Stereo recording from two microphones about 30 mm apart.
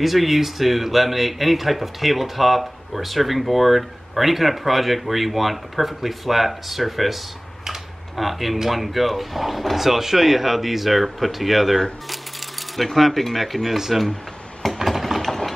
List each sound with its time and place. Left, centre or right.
0.0 s speech: centre
8.2 s speech: centre
14.8 s a sound: centre